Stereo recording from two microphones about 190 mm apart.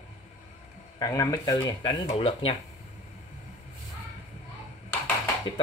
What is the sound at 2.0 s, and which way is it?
Speech, 30° left (ahead or behind).